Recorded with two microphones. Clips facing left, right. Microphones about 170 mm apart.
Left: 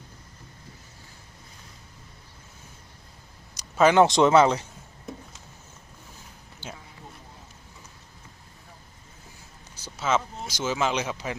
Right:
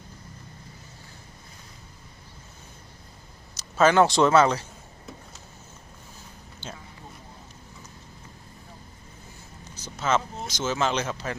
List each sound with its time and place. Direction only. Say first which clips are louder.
3.5 s a man's voice: left 1 dB; 15° left (ahead or behind)
9.7 s speech: even; 5° left (ahead or behind)